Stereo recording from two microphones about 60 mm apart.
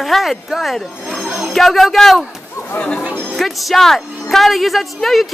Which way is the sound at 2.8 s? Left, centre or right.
Centre.